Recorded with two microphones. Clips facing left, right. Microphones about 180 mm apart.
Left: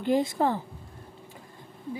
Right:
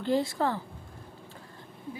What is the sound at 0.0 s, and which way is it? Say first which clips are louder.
Speech: left 3 dB; 20° left (ahead or behind).